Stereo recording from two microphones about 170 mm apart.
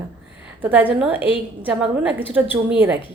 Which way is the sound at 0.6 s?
10° right (ahead or behind).